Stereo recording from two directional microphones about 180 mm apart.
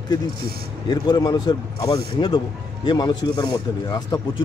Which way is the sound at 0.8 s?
20° left (ahead or behind).